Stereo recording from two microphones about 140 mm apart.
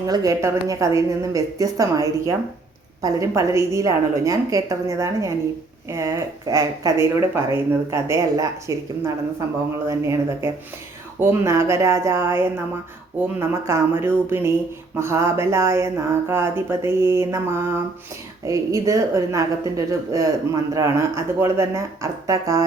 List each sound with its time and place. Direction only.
0.0 s a woman's voice: 25° right (ahead or behind)